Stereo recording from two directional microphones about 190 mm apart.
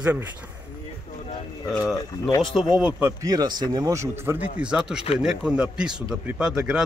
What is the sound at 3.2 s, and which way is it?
A man's voice, 20° right (ahead or behind).